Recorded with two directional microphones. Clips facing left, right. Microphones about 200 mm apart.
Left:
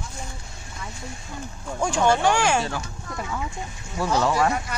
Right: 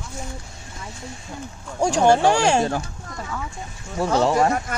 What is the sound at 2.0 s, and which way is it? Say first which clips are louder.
Speech: right 4 dB; 35° right (ahead or behind).